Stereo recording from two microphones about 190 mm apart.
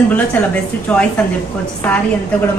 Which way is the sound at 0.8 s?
5° left (ahead or behind).